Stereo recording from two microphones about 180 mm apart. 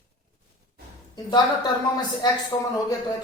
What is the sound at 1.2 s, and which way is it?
A woman's voice, 20° left (ahead or behind).